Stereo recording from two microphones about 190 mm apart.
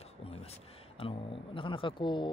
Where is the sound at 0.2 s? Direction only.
30° left (ahead or behind).